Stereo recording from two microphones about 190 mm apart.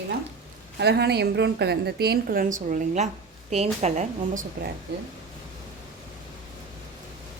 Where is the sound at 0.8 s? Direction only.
60° right (ahead or behind); by 4.4 s 35° right (ahead or behind).